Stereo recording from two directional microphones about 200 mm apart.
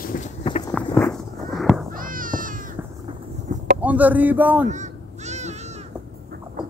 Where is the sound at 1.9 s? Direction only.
45° right (ahead or behind).